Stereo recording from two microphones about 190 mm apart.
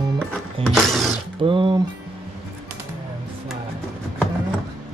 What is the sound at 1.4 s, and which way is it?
Speech, 25° right (ahead or behind).